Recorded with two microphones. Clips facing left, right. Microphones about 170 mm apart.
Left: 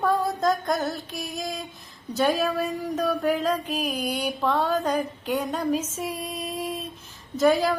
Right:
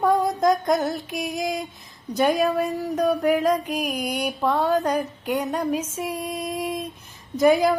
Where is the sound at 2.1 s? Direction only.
15° right (ahead or behind).